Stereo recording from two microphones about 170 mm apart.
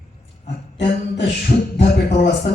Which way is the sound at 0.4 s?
85° left.